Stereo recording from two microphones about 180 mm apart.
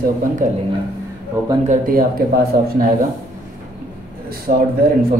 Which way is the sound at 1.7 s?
55° right (ahead or behind).